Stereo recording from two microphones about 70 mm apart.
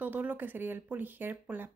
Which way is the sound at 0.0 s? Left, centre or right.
Right.